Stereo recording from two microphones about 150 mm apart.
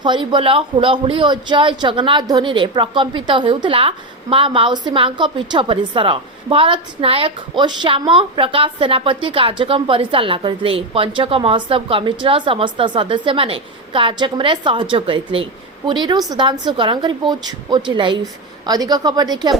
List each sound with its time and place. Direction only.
0.0 s a woman's voice: 30° right (ahead or behind)